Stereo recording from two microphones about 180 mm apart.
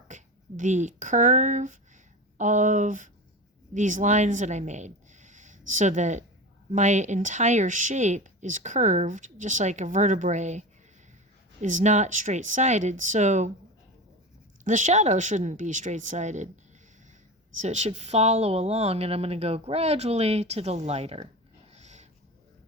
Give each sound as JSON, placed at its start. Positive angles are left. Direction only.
{"t": 0.1, "sound": "speech", "side_deg": -45}
{"t": 14.6, "sound": "speech", "side_deg": -45}
{"t": 17.6, "sound": "speech", "side_deg": -40}
{"t": 21.7, "sound": "a sound", "side_deg": -40}